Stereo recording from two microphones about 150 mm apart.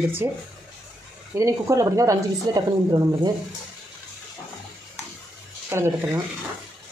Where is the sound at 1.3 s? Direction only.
20° right (ahead or behind).